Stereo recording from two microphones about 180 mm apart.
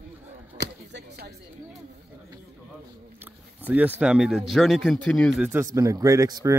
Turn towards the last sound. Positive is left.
turn(degrees=-20)  # may be behind; listen again after turning